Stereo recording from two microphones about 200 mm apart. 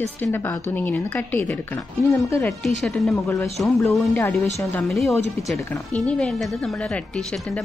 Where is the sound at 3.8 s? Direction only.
10° left (ahead or behind).